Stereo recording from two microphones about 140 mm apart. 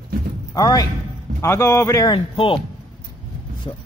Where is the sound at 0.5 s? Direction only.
25° left (ahead or behind).